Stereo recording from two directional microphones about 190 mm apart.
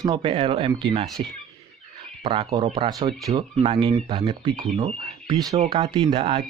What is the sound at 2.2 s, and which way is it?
Speech, 25° right (ahead or behind).